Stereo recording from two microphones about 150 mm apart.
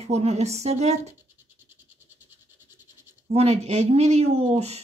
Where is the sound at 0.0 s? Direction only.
45° right (ahead or behind).